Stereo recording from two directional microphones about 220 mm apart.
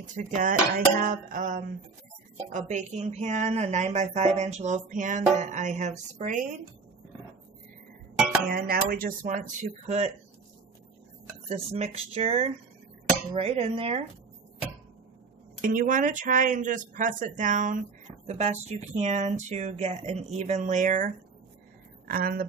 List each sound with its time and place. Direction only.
0.0 s speech: 35° right (ahead or behind)
8.5 s speech: 40° right (ahead or behind)
11.4 s speech: 30° right (ahead or behind)
15.6 s a woman's voice: 35° right (ahead or behind)